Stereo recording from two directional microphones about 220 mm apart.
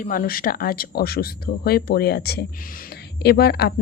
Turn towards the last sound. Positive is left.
turn(degrees=45)  # may be behind; listen again after turning